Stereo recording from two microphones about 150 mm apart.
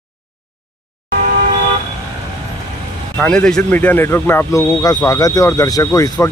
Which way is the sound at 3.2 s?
5° left (ahead or behind).